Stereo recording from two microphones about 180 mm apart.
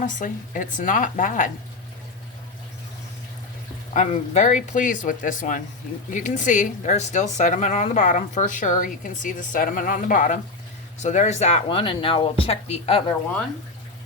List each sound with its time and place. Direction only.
0.0 s speech: 45° left (ahead or behind)
3.9 s speech: 40° left (ahead or behind)